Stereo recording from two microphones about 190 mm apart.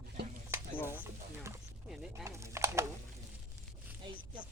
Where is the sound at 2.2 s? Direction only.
15° right (ahead or behind).